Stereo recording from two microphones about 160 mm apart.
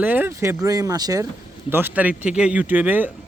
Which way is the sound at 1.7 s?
10° right (ahead or behind).